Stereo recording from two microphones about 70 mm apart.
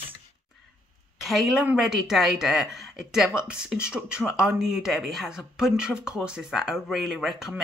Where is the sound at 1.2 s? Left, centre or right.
Centre.